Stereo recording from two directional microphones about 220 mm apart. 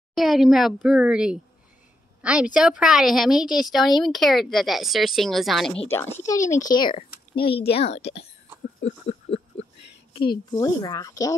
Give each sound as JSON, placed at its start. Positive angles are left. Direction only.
{"t": 0.1, "sound": "a woman's voice", "side_deg": 0}
{"t": 9.0, "sound": "a sound", "side_deg": 30}
{"t": 10.1, "sound": "a woman's voice", "side_deg": 20}